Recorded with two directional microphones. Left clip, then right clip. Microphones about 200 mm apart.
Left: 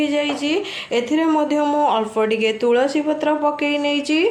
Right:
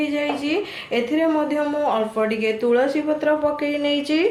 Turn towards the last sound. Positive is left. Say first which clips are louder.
# left 2 dB
turn(degrees=40)  # may be behind; listen again after turning